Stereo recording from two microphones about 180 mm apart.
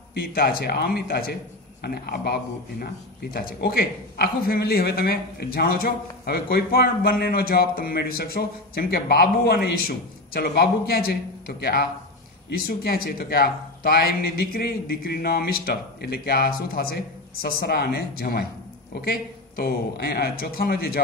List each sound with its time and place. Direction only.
0.1 s a man's voice: 55° left (ahead or behind)